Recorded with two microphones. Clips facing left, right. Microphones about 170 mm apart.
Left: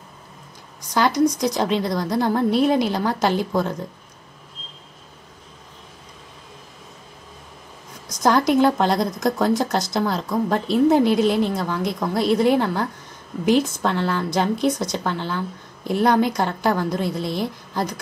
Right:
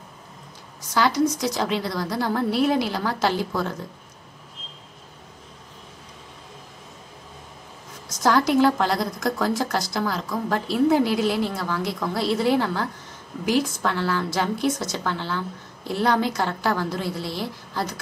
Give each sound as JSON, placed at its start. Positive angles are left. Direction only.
{"t": 0.9, "sound": "a woman's voice", "side_deg": 15}
{"t": 8.1, "sound": "a woman's voice", "side_deg": 20}